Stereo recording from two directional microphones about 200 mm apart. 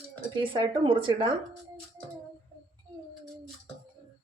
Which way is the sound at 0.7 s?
25° right (ahead or behind).